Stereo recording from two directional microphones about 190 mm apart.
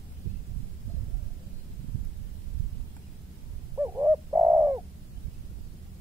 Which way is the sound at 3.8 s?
15° right (ahead or behind).